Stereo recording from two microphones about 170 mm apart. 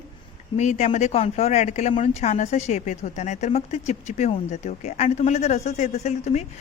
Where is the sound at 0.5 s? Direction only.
45° left (ahead or behind).